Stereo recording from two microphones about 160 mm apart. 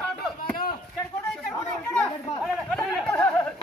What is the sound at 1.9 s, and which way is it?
Chatter, centre (ahead or behind).